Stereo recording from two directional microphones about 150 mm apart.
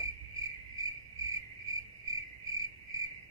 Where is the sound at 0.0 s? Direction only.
20° right (ahead or behind).